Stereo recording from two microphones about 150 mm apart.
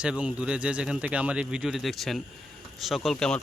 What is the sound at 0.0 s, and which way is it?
A man's voice, 5° right (ahead or behind).